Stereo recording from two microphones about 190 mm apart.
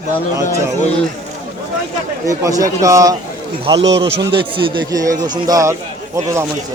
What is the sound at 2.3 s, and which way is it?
A man's voice, 15° right (ahead or behind).